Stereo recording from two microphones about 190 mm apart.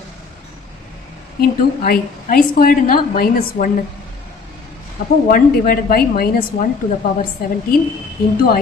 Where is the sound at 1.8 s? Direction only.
45° left (ahead or behind).